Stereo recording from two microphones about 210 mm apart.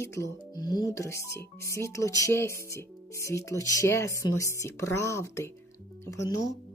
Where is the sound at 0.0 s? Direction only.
15° left (ahead or behind).